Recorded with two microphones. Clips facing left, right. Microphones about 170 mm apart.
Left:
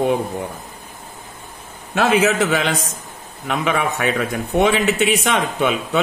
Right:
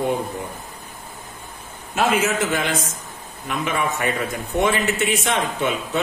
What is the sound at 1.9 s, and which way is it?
A man's voice, 70° left (ahead or behind).